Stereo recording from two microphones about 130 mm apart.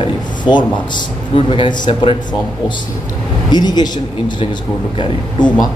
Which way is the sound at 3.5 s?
35° left (ahead or behind).